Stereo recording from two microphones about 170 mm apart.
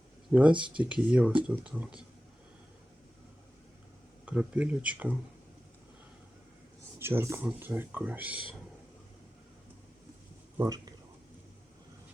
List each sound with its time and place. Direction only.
0.6 s speech: 5° right (ahead or behind)
4.3 s speech: 10° right (ahead or behind)
7.0 s speech: 15° right (ahead or behind)
10.6 s speech: 20° right (ahead or behind)